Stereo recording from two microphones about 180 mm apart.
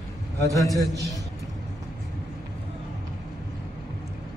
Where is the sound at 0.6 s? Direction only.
Centre (ahead or behind).